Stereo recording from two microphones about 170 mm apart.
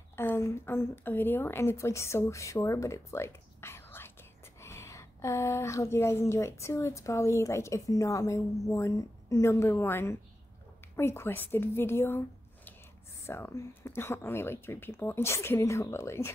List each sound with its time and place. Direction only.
0.1 s a woman's voice: 15° left (ahead or behind)
13.3 s speech: 15° left (ahead or behind)